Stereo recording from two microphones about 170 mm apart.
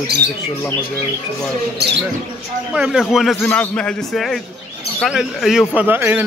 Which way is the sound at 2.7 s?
5° right (ahead or behind).